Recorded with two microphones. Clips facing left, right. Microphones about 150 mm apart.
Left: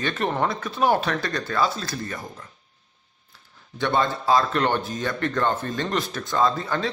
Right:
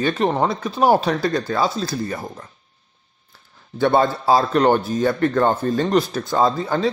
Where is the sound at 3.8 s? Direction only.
35° right (ahead or behind).